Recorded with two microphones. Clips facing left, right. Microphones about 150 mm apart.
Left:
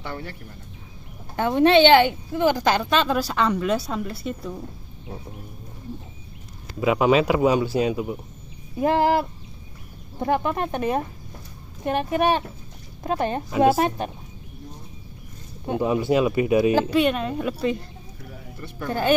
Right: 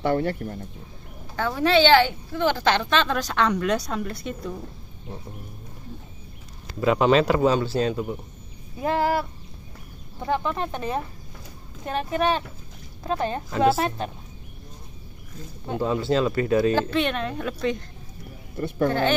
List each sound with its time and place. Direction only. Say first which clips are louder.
0.0 s speech: right 11 dB; 50° right (ahead or behind)
1.3 s a woman's voice: left 4 dB; 20° left (ahead or behind); by 4.4 s 5° left (ahead or behind)
6.8 s a woman's voice: even; 5° left (ahead or behind)
15.6 s a woman's voice: left 3 dB; 15° left (ahead or behind)